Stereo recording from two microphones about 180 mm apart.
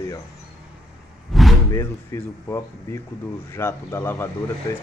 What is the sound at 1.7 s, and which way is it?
Speech, 15° left (ahead or behind).